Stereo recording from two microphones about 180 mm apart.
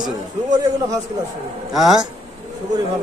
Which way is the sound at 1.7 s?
Centre (ahead or behind).